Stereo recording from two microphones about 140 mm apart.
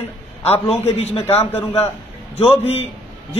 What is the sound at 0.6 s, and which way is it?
Speech, 50° left (ahead or behind).